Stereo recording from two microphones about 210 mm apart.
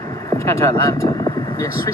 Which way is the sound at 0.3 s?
15° left (ahead or behind).